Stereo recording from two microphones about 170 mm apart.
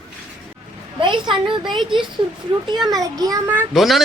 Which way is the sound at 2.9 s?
20° right (ahead or behind).